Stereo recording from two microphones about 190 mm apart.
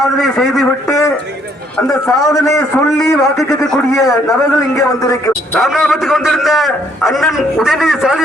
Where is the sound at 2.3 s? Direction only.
15° left (ahead or behind).